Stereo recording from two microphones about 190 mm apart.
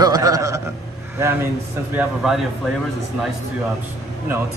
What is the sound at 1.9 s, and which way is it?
Speech, 5° right (ahead or behind).